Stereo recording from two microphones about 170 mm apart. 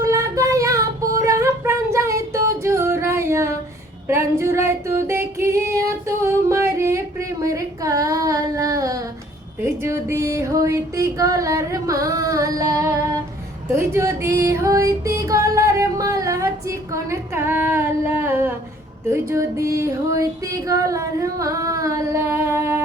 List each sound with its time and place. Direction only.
0.0 s female singing: 20° right (ahead or behind)
9.6 s music: 15° right (ahead or behind)
19.1 s female singing: 15° right (ahead or behind)